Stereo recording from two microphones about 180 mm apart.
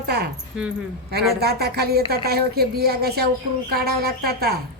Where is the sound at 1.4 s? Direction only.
60° right (ahead or behind).